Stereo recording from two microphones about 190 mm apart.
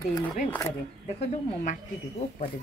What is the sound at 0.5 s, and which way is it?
Speech, 15° left (ahead or behind).